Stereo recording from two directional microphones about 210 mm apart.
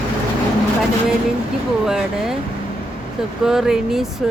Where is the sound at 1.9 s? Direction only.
Centre (ahead or behind).